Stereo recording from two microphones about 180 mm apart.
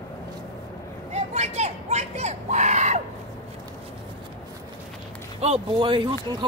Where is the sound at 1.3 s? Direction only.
40° right (ahead or behind).